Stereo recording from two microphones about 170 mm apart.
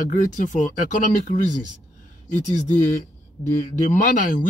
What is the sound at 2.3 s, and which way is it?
Speech, 45° left (ahead or behind).